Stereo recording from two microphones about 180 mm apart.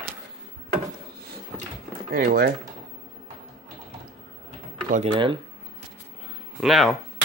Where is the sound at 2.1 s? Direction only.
60° right (ahead or behind).